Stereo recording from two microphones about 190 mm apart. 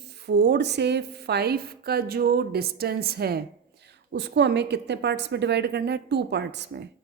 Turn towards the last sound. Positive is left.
turn(degrees=-65)  # may be behind; listen again after turning